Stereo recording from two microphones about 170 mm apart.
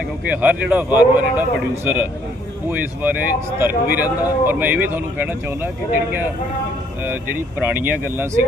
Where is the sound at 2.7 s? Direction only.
10° right (ahead or behind).